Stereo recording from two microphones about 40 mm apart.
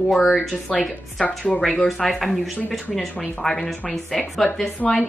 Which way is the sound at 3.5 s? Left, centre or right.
Centre.